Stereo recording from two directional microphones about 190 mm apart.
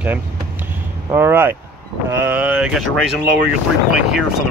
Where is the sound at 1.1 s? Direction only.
10° right (ahead or behind).